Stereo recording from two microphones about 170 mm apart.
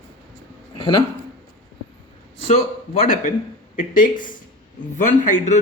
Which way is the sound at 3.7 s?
50° left (ahead or behind).